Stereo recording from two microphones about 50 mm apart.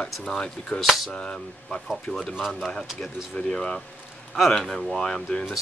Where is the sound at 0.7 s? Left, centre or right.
Centre.